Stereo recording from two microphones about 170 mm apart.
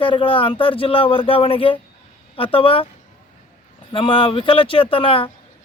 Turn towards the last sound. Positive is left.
turn(degrees=30)  # may be behind; listen again after turning